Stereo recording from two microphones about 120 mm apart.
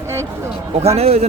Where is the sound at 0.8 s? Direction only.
60° right (ahead or behind).